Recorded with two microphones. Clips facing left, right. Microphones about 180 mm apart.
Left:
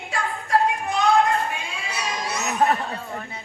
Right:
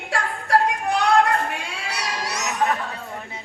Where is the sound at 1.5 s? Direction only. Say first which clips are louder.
Right 1 dB; 70° right (ahead or behind).